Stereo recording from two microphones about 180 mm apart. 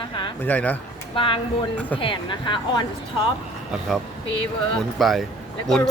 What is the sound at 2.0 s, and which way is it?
Speech, 25° left (ahead or behind).